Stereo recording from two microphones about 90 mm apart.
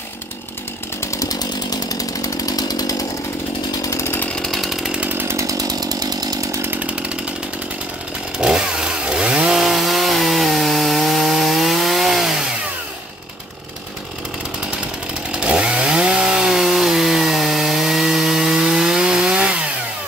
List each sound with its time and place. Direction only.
1.0 s chainsaw: 35° left (ahead or behind)
3.8 s chainsaw: 35° left (ahead or behind)
4.4 s chainsaw: centre (ahead or behind)
5.1 s chainsaw: 30° right (ahead or behind); by 6.6 s 45° right (ahead or behind)
6.6 s chainsaw: 15° right (ahead or behind)
8.4 s chainsaw: 10° right (ahead or behind)
15.4 s chainsaw: 10° right (ahead or behind)